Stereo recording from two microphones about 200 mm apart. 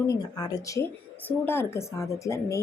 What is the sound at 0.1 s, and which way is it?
A woman's voice, 20° left (ahead or behind).